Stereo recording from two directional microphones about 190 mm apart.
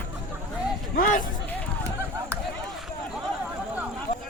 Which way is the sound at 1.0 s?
45° left (ahead or behind).